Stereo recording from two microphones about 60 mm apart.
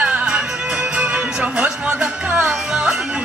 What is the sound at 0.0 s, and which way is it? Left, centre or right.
Music, centre.